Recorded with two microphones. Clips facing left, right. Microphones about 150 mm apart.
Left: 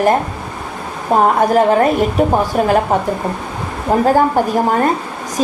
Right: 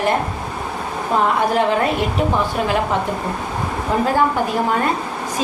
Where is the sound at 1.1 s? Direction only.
45° left (ahead or behind).